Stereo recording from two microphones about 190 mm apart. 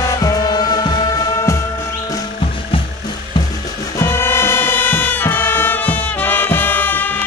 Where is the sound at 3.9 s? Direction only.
15° left (ahead or behind).